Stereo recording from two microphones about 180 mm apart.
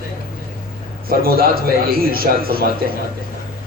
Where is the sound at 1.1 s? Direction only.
55° right (ahead or behind).